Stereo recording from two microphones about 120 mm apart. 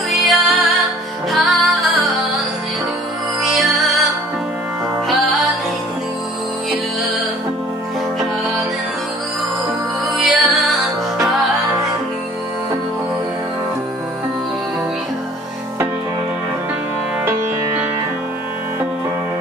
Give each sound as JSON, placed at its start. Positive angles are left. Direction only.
{"t": 0.1, "sound": "music", "side_deg": 0}
{"t": 3.4, "sound": "music", "side_deg": 0}
{"t": 10.1, "sound": "music", "side_deg": 0}